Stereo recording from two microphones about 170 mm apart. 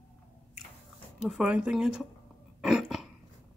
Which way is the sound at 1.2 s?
5° right (ahead or behind).